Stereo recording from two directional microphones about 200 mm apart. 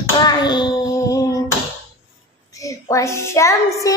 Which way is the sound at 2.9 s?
15° left (ahead or behind).